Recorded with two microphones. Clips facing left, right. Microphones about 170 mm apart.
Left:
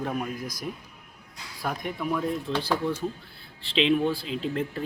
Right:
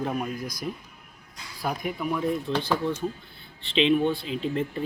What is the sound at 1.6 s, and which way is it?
Speech, 5° right (ahead or behind).